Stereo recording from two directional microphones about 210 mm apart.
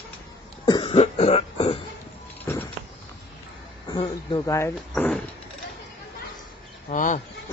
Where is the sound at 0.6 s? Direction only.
20° left (ahead or behind).